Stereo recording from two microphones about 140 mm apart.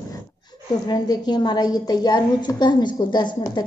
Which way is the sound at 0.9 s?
30° left (ahead or behind).